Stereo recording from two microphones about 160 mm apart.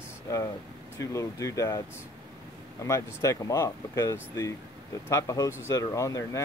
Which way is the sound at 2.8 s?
20° left (ahead or behind).